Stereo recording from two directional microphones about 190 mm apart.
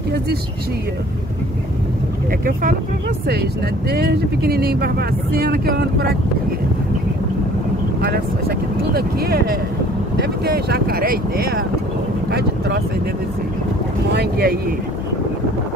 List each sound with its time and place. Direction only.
3.9 s speech: 55° right (ahead or behind)
8.0 s speech: 55° right (ahead or behind)
14.1 s speech: 55° right (ahead or behind)